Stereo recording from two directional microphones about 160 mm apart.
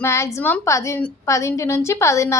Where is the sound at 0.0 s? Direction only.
15° left (ahead or behind).